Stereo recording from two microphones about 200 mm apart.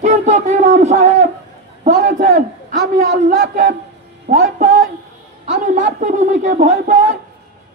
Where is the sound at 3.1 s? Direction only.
55° right (ahead or behind).